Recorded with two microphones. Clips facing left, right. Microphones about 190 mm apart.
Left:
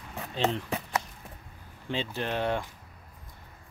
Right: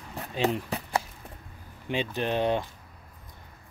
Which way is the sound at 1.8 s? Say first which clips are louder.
Right 3 dB; 15° right (ahead or behind).